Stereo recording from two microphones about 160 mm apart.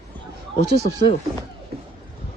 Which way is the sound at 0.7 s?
90° right.